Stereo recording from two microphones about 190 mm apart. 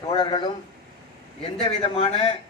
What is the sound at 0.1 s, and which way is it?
A man's voice, 25° left (ahead or behind).